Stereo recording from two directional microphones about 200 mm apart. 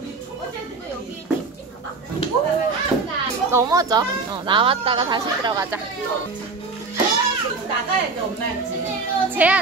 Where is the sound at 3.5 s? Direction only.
15° right (ahead or behind).